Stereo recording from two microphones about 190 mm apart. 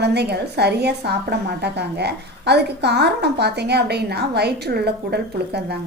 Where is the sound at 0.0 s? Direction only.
60° right (ahead or behind).